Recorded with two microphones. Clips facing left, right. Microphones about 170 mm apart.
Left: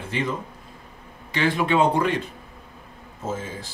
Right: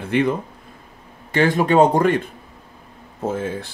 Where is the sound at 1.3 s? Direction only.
45° right (ahead or behind).